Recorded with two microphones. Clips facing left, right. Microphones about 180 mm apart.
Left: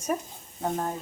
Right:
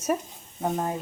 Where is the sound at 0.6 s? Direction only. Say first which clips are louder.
Right 2 dB; 5° right (ahead or behind).